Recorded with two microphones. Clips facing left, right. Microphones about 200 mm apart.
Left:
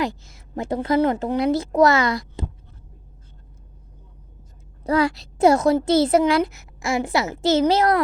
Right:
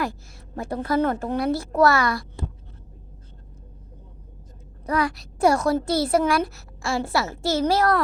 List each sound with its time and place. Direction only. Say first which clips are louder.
0.3 s a woman's voice: left 4 dB; 20° left (ahead or behind)
4.8 s a woman's voice: left 4 dB; 25° left (ahead or behind)